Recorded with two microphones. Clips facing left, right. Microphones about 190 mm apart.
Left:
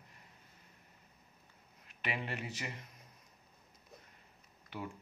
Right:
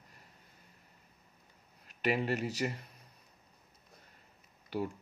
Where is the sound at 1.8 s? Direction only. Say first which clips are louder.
Right 9 dB; 40° right (ahead or behind).